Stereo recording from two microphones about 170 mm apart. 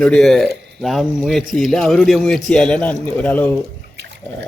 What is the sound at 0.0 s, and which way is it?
A man's voice, 5° left (ahead or behind).